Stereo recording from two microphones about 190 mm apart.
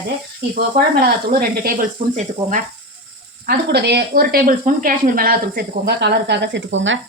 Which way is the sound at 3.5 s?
60° right (ahead or behind).